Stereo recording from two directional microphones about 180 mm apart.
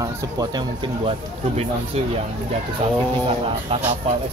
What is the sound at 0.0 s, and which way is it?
Speech, 20° right (ahead or behind).